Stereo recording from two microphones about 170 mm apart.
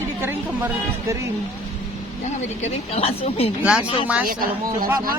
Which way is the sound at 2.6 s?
35° left (ahead or behind).